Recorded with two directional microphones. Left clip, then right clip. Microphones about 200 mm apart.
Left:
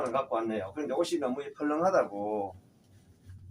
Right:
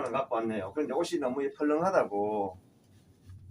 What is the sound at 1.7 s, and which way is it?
Speech, 20° right (ahead or behind).